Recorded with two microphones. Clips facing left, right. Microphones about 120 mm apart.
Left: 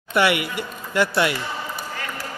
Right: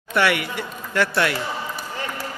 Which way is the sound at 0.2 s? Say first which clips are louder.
Left 1 dB; 10° left (ahead or behind).